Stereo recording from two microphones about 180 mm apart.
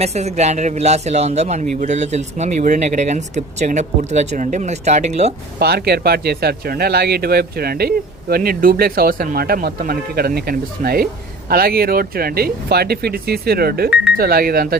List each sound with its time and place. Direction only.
0.0 s speech: 35° right (ahead or behind)
5.5 s speech: 65° right (ahead or behind)